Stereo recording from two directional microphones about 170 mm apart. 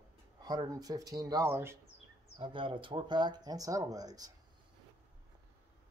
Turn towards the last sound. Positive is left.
turn(degrees=-20)  # may be behind; listen again after turning